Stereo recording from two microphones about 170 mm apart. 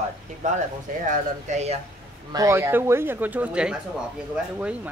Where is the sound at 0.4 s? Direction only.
45° right (ahead or behind).